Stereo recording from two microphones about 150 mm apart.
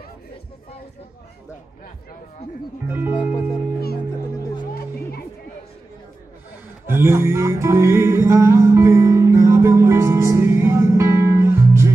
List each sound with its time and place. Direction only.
2.9 s music: 10° right (ahead or behind)
4.7 s music: 90° left
6.9 s music: 15° right (ahead or behind)